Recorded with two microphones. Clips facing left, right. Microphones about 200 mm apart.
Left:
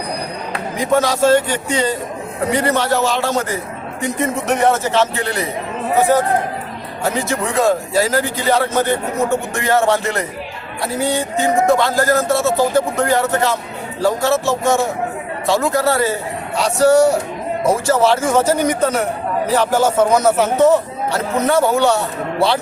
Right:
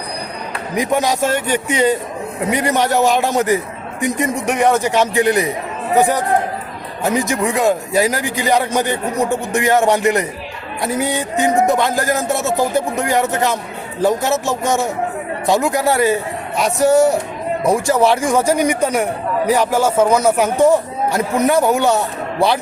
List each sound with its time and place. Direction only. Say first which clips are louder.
0.8 s speech: left 1 dB; 15° right (ahead or behind)
7.0 s speech: right 2 dB; 15° right (ahead or behind)